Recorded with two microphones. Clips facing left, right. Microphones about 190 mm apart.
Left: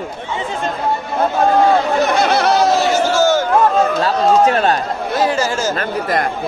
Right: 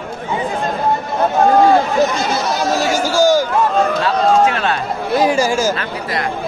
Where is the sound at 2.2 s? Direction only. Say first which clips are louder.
Left 5 dB; 65° left (ahead or behind).